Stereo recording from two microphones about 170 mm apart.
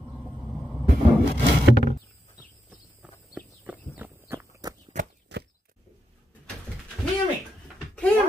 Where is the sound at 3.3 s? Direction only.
10° right (ahead or behind).